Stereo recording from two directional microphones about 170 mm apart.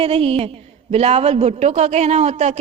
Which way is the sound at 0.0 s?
35° right (ahead or behind).